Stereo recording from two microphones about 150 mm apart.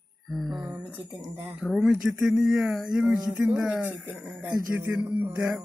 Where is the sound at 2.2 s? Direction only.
Centre (ahead or behind).